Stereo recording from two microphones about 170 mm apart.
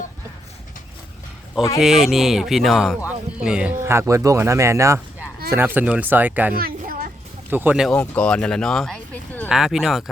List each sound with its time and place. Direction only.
1.8 s speech: centre (ahead or behind)
6.5 s children playing: 60° right (ahead or behind)
7.5 s speech: 10° right (ahead or behind)
7.9 s speech: 10° left (ahead or behind)